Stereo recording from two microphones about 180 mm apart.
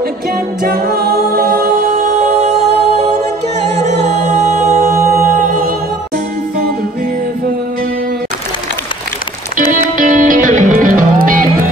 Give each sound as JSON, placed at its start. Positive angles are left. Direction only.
{"t": 0.7, "sound": "a capella", "side_deg": -60}
{"t": 2.0, "sound": "music", "side_deg": -40}
{"t": 9.7, "sound": "music", "side_deg": -45}